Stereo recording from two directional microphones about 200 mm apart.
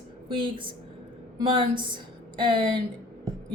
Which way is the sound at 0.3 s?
25° right (ahead or behind).